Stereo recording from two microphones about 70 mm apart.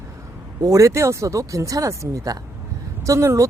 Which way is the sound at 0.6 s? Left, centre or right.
Right.